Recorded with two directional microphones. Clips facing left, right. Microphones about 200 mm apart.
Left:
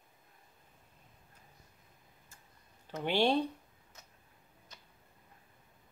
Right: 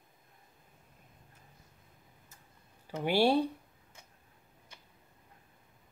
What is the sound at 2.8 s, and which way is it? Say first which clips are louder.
Speech: right 3 dB; 10° right (ahead or behind).